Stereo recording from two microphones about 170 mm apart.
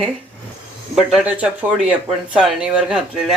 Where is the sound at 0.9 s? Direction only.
5° right (ahead or behind).